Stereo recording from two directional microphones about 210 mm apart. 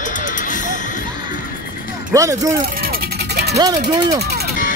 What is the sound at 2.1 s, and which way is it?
Speech, 15° right (ahead or behind).